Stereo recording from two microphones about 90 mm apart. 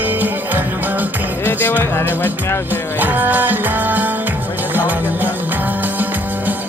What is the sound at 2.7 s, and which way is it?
Speech, 25° left (ahead or behind).